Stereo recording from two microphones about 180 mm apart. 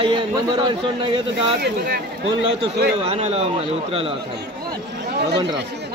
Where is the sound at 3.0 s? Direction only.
35° right (ahead or behind).